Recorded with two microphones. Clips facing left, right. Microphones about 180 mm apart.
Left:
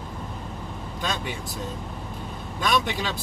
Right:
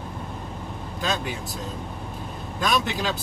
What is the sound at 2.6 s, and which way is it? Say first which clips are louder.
Speech: even; 5° right (ahead or behind).